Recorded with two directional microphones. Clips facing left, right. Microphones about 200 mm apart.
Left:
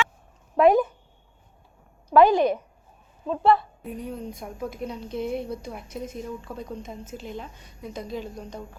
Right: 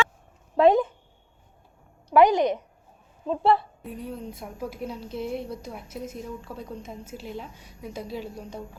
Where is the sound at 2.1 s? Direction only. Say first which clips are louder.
Left 1 dB; 20° right (ahead or behind).